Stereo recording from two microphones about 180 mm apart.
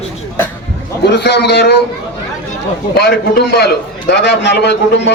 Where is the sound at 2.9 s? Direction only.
60° left (ahead or behind).